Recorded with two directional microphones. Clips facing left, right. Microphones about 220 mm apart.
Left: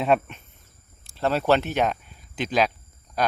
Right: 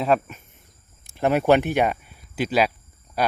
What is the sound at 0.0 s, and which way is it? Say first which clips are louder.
Speech: even; centre (ahead or behind).